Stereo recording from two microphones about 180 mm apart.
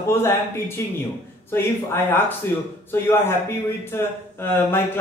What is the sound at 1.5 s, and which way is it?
Speech, 10° left (ahead or behind).